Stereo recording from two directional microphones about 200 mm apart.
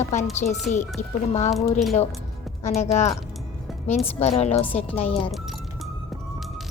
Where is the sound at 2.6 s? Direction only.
35° left (ahead or behind).